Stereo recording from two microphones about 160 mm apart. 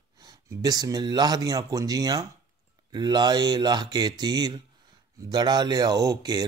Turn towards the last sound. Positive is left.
turn(degrees=-25)  # may be behind; listen again after turning